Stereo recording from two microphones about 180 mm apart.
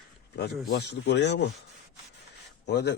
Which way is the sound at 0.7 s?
70° left (ahead or behind).